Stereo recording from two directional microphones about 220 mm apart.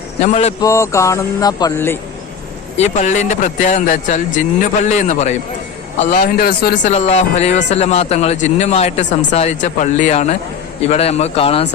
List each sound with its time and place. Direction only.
0.2 s speech: 30° left (ahead or behind)
0.6 s speech: 15° left (ahead or behind)
2.7 s speech: 30° left (ahead or behind)
6.9 s speech: 30° left (ahead or behind)